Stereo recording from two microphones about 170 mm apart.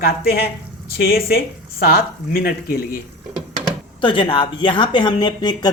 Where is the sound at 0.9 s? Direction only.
65° left (ahead or behind).